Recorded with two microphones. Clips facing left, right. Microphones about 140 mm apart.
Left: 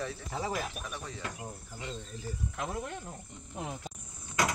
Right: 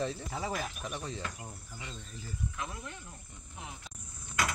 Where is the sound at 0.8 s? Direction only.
20° right (ahead or behind).